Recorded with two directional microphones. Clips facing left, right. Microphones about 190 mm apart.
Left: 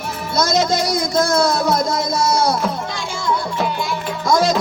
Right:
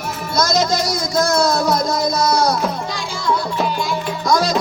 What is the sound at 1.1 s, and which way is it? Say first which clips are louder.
Music: right 1 dB; 25° left (ahead or behind).